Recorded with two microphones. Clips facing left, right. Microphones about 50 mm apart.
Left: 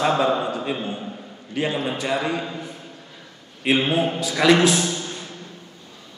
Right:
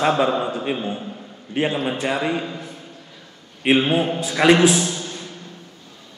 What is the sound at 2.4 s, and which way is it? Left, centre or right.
Speech, centre.